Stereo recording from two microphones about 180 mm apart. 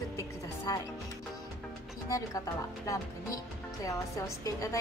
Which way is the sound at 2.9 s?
20° left (ahead or behind).